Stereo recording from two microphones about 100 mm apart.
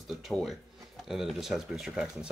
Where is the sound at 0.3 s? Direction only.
Centre (ahead or behind).